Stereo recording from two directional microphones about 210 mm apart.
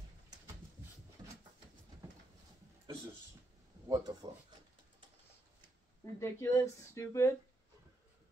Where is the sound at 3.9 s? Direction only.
20° right (ahead or behind).